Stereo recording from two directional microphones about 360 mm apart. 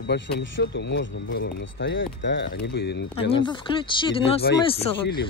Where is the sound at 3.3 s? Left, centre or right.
Centre.